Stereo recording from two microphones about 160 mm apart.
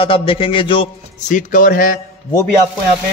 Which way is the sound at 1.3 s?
55° left (ahead or behind).